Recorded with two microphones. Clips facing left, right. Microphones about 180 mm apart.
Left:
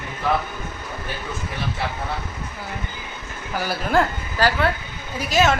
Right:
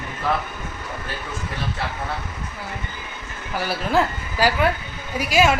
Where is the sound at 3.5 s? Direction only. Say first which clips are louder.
Even; centre (ahead or behind).